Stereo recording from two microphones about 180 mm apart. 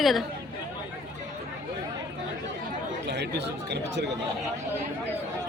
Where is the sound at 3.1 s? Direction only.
70° right (ahead or behind).